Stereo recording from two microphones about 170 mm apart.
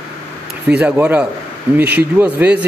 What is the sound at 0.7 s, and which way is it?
Speech, 10° right (ahead or behind).